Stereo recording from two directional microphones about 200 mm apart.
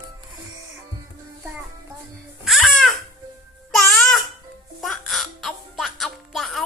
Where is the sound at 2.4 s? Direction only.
Centre (ahead or behind).